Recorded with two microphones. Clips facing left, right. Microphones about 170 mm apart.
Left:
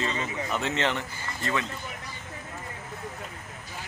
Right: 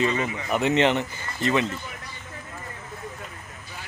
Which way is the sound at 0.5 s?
15° right (ahead or behind).